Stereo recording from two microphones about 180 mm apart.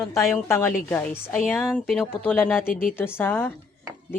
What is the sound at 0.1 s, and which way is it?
Speech, 15° left (ahead or behind).